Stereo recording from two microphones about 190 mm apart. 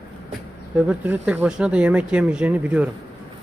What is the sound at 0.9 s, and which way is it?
Speech, 10° right (ahead or behind).